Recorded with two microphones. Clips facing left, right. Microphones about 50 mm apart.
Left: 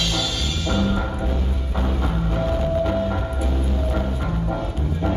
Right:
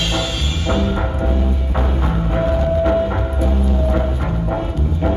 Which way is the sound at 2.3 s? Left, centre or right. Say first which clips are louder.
Right 5 dB; right.